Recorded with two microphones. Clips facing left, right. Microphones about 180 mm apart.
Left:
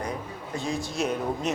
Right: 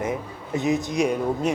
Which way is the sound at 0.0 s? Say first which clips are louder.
Right 5 dB; 20° right (ahead or behind).